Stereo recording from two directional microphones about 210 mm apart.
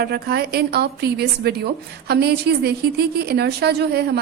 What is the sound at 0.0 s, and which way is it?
A woman's voice, 50° right (ahead or behind).